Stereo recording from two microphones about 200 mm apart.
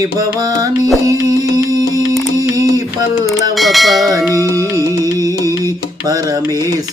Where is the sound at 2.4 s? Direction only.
15° right (ahead or behind).